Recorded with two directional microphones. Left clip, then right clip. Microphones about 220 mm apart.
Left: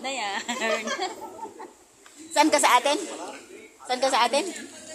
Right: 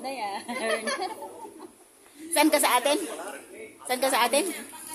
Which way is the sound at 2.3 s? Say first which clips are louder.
Left 3 dB; 10° right (ahead or behind).